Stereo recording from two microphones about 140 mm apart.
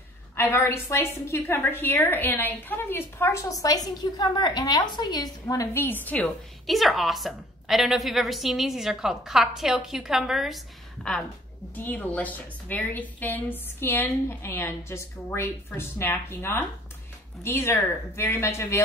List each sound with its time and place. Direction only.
0.4 s a woman's voice: 15° left (ahead or behind)
6.6 s a woman's voice: centre (ahead or behind); by 18.8 s 20° left (ahead or behind)